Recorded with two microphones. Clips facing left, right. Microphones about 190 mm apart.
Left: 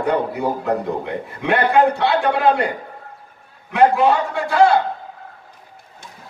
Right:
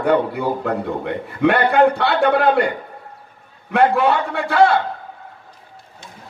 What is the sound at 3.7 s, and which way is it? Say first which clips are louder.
Speech: left 1 dB; 60° right (ahead or behind).